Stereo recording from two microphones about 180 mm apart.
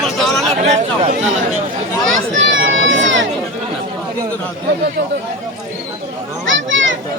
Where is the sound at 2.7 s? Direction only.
90° right.